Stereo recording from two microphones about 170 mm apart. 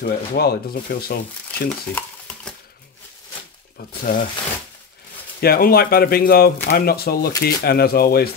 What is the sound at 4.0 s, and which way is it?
Speech, 55° left (ahead or behind).